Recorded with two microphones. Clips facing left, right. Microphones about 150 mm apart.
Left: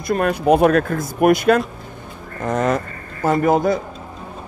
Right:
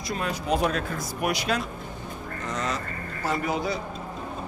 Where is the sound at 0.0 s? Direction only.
55° left (ahead or behind).